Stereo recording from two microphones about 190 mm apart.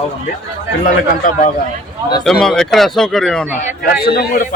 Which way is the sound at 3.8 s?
55° left (ahead or behind).